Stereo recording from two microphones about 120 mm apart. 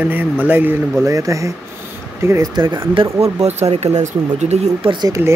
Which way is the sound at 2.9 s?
55° right (ahead or behind).